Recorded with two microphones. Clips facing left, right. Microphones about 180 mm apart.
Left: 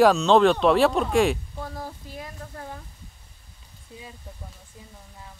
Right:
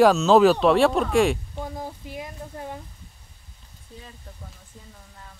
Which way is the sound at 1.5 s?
20° right (ahead or behind).